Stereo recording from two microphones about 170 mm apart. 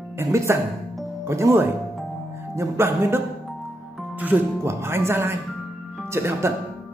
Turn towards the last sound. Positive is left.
turn(degrees=-15)  # may be behind; listen again after turning